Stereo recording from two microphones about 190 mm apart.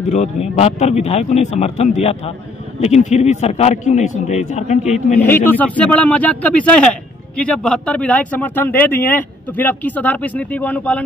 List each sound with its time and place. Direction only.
0.1 s a man's voice: 35° left (ahead or behind)
5.2 s speech: 10° left (ahead or behind)